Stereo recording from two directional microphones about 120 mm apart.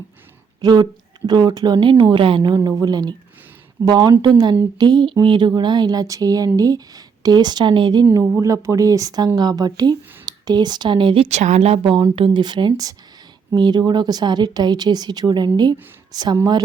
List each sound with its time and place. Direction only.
0.6 s speech: 35° right (ahead or behind)
8.0 s speech: 20° right (ahead or behind); by 16.4 s 35° right (ahead or behind)